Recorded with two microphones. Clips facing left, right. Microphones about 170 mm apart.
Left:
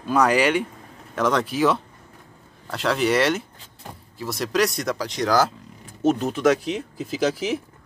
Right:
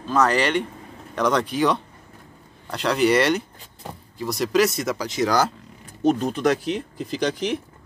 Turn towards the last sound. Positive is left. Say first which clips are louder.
# left 1 dB
turn(degrees=5)  # may be behind; listen again after turning